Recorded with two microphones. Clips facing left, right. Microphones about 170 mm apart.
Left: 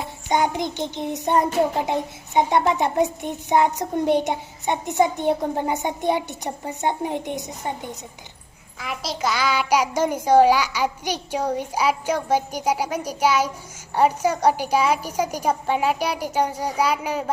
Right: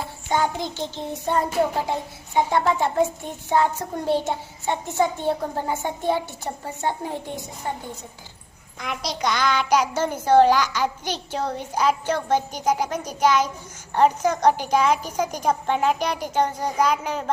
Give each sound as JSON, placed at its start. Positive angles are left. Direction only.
{"t": 0.3, "sound": "a woman's voice", "side_deg": 15}
{"t": 8.8, "sound": "a woman's voice", "side_deg": 5}